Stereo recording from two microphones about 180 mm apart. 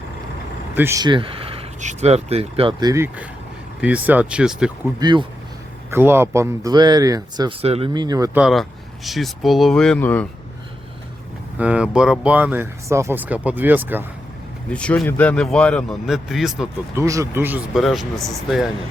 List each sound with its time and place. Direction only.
0.8 s speech: 15° right (ahead or behind)
2.9 s speech: 15° right (ahead or behind)
4.9 s speech: 25° right (ahead or behind)
5.9 s speech: 15° right (ahead or behind)
8.3 s speech: 5° right (ahead or behind)
11.5 s speech: 5° right (ahead or behind)
14.7 s speech: 5° left (ahead or behind)
16.9 s speech: 15° right (ahead or behind)
17.7 s speech: centre (ahead or behind)